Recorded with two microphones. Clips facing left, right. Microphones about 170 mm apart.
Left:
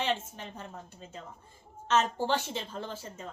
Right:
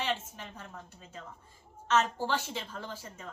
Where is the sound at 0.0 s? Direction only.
25° left (ahead or behind).